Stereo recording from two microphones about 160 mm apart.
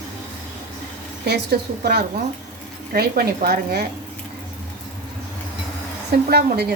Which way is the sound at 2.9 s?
70° right (ahead or behind).